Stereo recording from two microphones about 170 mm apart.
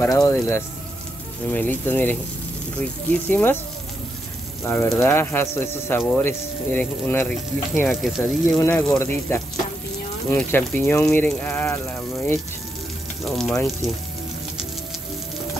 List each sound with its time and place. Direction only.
0.0 s speech: 20° left (ahead or behind)
4.9 s speech: 15° left (ahead or behind)
7.9 s speech: centre (ahead or behind)